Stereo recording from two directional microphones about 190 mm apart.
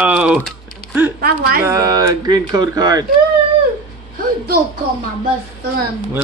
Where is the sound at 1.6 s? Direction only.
15° right (ahead or behind).